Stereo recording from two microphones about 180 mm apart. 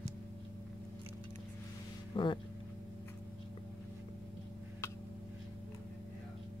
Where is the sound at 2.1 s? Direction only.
25° left (ahead or behind).